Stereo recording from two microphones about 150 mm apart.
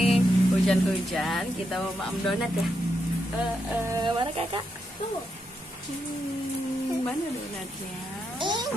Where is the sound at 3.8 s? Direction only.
25° right (ahead or behind).